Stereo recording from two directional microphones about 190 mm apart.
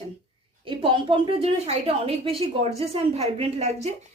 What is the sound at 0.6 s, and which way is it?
A woman's voice, 25° right (ahead or behind).